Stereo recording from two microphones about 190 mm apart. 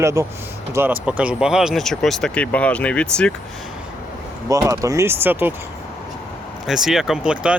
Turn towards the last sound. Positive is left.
turn(degrees=-5)  # may be behind; listen again after turning